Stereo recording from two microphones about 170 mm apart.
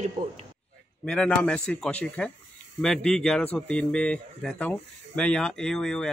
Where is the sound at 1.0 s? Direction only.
5° left (ahead or behind).